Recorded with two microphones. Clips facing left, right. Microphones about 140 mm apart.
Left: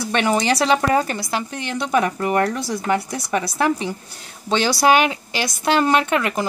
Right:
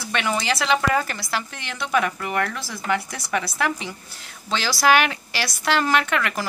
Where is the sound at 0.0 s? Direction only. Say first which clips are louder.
Left 6 dB; 35° left (ahead or behind).